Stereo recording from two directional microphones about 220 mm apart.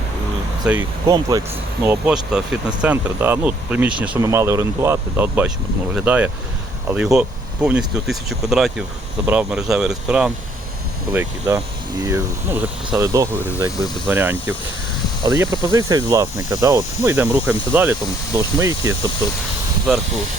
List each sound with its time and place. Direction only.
0.6 s speech: 10° right (ahead or behind)